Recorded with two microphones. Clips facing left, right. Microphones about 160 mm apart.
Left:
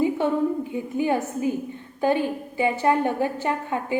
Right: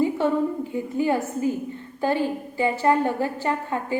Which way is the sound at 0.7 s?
20° left (ahead or behind).